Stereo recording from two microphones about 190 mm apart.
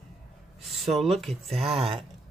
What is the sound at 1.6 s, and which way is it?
Speech, 30° right (ahead or behind).